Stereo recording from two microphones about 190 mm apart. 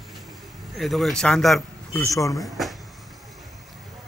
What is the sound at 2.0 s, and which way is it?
Speech, 15° left (ahead or behind).